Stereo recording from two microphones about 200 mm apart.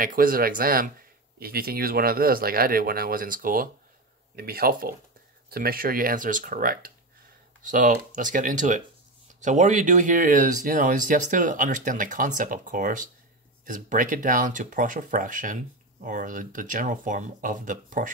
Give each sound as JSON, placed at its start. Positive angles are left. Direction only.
{"t": 0.0, "sound": "speech", "side_deg": -45}